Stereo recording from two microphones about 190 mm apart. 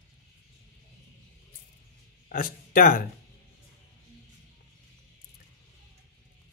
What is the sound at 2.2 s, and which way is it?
Speech, 50° left (ahead or behind).